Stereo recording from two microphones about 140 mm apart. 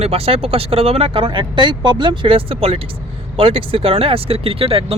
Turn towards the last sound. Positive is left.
turn(degrees=-45)  # may be behind; listen again after turning